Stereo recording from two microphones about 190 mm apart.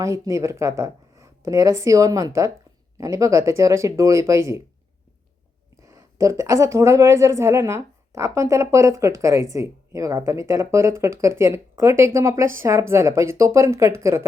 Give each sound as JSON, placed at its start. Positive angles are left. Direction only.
{"t": 0.0, "sound": "a woman's voice", "side_deg": -15}
{"t": 5.8, "sound": "a woman's voice", "side_deg": -15}